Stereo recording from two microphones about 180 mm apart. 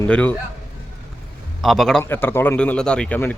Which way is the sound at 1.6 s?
Centre (ahead or behind).